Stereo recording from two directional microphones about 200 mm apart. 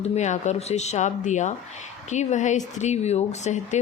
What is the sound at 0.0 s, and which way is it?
A woman's voice, 35° left (ahead or behind).